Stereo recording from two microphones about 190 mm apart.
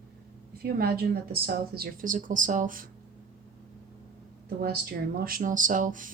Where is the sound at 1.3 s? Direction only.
50° right (ahead or behind).